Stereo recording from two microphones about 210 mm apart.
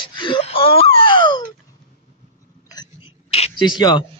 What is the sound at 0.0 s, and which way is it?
Wail, 25° left (ahead or behind).